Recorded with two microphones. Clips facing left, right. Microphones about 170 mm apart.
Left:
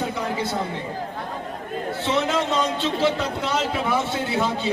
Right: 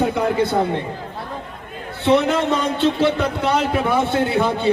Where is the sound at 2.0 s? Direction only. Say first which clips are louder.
Right 7 dB; 60° right (ahead or behind).